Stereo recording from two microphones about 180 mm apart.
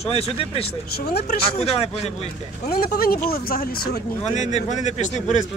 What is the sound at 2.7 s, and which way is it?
Speech, 55° left (ahead or behind).